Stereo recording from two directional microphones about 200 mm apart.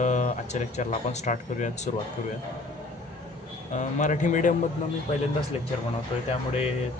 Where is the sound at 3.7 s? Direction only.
35° left (ahead or behind).